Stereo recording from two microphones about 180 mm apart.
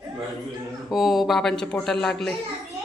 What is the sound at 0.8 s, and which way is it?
Speech, centre (ahead or behind).